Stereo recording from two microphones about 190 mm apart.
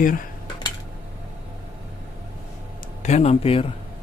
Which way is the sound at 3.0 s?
35° left (ahead or behind).